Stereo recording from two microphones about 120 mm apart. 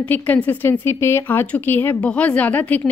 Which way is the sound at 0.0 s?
15° left (ahead or behind).